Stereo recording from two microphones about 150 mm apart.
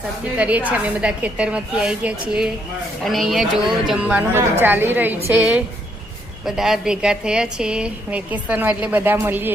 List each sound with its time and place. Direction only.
0.3 s speech: 10° right (ahead or behind)